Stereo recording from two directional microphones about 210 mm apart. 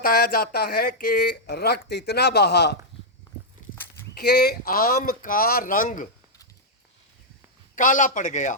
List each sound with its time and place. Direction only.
0.0 s speech: 45° left (ahead or behind)
4.1 s speech: 50° left (ahead or behind)
7.8 s speech: 40° left (ahead or behind)